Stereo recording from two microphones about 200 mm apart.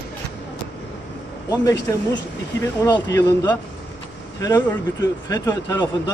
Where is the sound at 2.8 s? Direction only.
20° left (ahead or behind).